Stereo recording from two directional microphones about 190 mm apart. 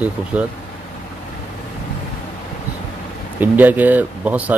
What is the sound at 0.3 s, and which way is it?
Speech, 5° right (ahead or behind).